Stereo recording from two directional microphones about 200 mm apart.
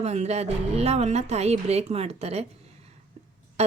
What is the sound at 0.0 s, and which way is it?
Speech, 35° right (ahead or behind).